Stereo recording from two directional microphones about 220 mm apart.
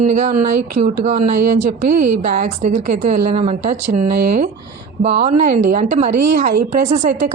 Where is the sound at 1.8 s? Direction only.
45° right (ahead or behind).